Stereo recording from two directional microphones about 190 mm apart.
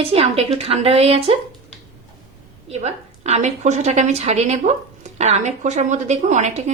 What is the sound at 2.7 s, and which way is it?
Speech, 35° right (ahead or behind).